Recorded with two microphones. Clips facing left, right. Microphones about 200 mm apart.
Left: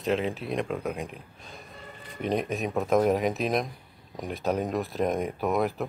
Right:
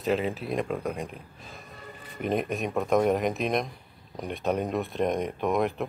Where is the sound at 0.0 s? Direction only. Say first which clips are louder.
Even; centre (ahead or behind).